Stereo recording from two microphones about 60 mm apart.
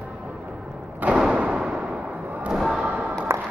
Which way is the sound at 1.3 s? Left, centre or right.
Centre.